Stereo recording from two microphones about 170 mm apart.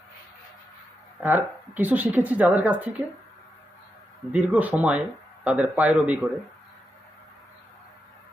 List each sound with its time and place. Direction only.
1.2 s speech: 10° right (ahead or behind)
4.3 s speech: 10° right (ahead or behind)